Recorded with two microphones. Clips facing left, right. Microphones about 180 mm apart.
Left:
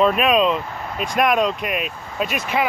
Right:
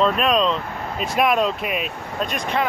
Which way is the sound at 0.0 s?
5° left (ahead or behind).